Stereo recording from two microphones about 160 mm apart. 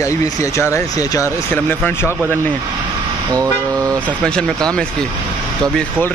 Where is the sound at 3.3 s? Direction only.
20° right (ahead or behind).